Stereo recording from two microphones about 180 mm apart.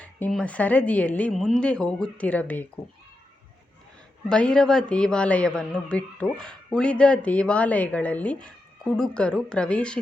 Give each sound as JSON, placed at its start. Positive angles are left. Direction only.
{"t": 0.0, "sound": "a woman's voice", "side_deg": 5}
{"t": 4.3, "sound": "a man's voice", "side_deg": 5}